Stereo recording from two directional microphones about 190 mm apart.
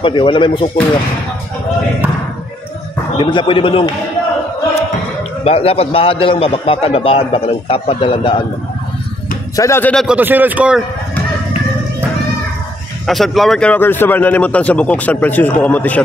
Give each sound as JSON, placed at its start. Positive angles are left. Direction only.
{"t": 0.0, "sound": "a man's voice", "side_deg": 25}
{"t": 3.2, "sound": "a man's voice", "side_deg": 25}
{"t": 5.4, "sound": "a man's voice", "side_deg": 30}
{"t": 9.6, "sound": "a man's voice", "side_deg": 10}
{"t": 10.0, "sound": "a man's voice", "side_deg": -10}
{"t": 13.0, "sound": "a man's voice", "side_deg": 0}